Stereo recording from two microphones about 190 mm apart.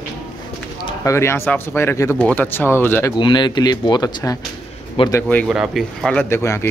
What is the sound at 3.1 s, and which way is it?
Speech, 25° left (ahead or behind).